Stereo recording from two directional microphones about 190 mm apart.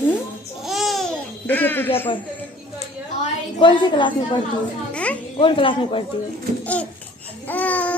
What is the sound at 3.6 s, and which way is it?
Speech, 25° left (ahead or behind).